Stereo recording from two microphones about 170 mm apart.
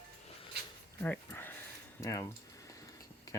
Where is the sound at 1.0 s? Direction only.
10° left (ahead or behind).